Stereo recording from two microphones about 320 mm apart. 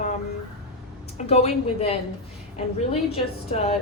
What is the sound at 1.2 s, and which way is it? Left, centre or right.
Speech, centre.